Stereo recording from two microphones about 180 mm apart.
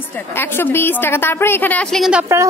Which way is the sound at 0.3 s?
10° left (ahead or behind).